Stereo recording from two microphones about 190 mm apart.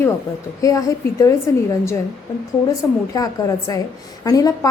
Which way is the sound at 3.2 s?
20° left (ahead or behind).